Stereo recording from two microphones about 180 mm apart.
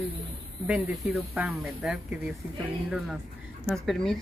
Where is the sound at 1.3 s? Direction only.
5° right (ahead or behind).